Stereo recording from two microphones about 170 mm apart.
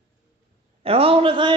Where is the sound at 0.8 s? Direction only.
35° right (ahead or behind).